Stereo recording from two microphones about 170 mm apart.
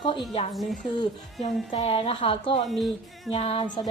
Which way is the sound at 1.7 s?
35° left (ahead or behind).